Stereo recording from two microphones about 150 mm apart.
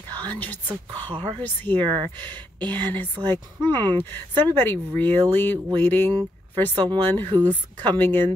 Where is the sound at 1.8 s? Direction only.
30° right (ahead or behind).